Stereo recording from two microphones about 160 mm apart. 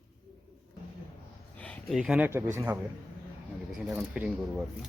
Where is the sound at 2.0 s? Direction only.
5° right (ahead or behind).